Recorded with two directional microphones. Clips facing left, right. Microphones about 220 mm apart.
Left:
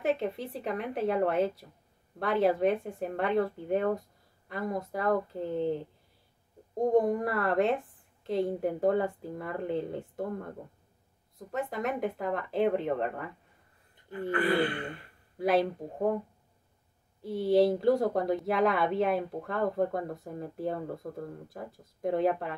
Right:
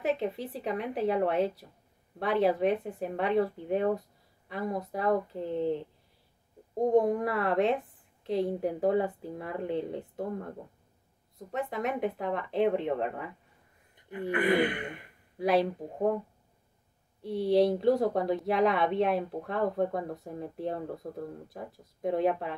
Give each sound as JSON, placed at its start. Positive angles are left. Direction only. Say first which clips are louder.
{"t": 0.0, "sound": "speech", "louder": "even", "side_deg": 0}
{"t": 14.3, "sound": "speech", "louder": "right 1 dB", "side_deg": -20}
{"t": 15.3, "sound": "speech", "louder": "even", "side_deg": 0}
{"t": 17.2, "sound": "speech", "louder": "even", "side_deg": 0}